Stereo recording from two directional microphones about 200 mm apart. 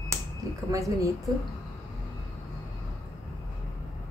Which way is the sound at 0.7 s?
15° right (ahead or behind).